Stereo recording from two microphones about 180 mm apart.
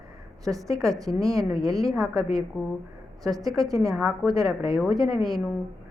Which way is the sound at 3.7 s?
20° right (ahead or behind).